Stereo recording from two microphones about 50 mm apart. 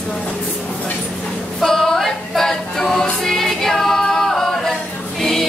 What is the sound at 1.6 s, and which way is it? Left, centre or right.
Music, centre.